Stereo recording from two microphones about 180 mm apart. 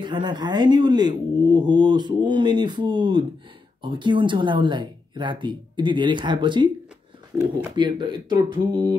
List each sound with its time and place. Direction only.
0.0 s speech: 25° right (ahead or behind)
7.7 s speech: 25° right (ahead or behind)